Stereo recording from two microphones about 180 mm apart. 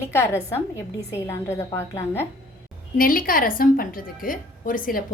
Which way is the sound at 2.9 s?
50° left (ahead or behind).